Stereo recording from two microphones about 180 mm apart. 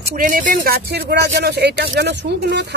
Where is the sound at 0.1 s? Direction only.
45° right (ahead or behind).